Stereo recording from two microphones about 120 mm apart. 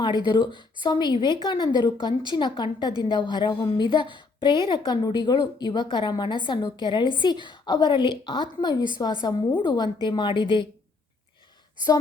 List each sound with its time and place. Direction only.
0.0 s a woman's voice: 40° left (ahead or behind)